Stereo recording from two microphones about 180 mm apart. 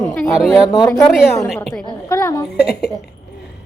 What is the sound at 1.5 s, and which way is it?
Speech, centre (ahead or behind).